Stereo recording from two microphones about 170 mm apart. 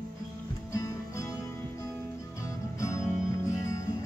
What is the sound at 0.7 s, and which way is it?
Music, 20° left (ahead or behind).